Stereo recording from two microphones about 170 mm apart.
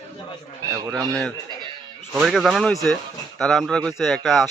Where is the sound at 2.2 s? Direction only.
Centre (ahead or behind).